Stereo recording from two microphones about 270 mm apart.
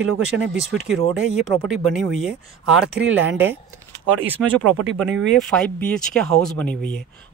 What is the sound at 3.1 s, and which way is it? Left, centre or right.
Speech, right.